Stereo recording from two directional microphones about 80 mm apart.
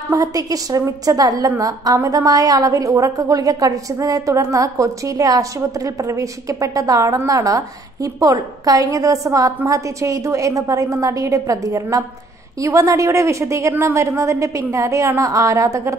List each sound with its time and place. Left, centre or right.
0.1 s a woman's voice: right